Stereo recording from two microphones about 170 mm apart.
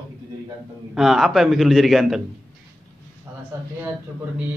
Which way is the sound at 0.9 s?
Centre (ahead or behind).